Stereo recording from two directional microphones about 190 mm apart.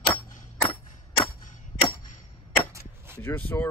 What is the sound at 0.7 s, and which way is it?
Clang, 25° left (ahead or behind).